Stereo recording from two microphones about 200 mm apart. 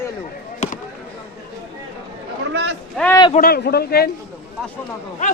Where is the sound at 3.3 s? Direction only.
50° left (ahead or behind).